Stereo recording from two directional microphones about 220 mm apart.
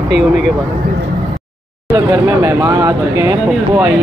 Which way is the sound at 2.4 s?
15° right (ahead or behind).